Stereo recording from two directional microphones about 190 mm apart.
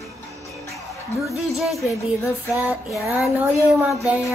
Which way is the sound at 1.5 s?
Centre (ahead or behind).